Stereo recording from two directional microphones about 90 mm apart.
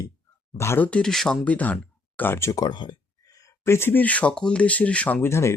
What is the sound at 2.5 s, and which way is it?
Speech, 50° left (ahead or behind).